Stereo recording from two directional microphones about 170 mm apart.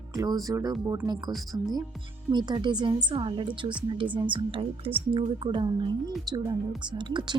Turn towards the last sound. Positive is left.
turn(degrees=-25)  # may be behind; listen again after turning